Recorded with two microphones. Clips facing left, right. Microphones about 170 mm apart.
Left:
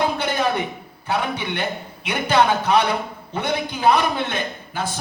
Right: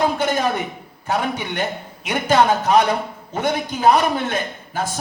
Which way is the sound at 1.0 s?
45° right (ahead or behind).